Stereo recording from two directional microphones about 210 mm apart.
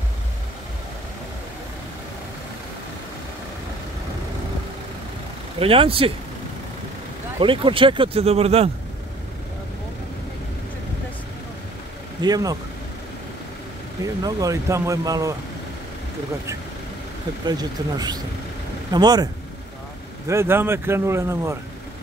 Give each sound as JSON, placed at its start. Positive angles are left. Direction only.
{"t": 5.6, "sound": "speech", "side_deg": -25}
{"t": 7.3, "sound": "speech", "side_deg": -25}
{"t": 12.2, "sound": "speech", "side_deg": -20}
{"t": 14.2, "sound": "speech", "side_deg": -15}
{"t": 17.5, "sound": "speech", "side_deg": -20}
{"t": 20.2, "sound": "speech", "side_deg": -10}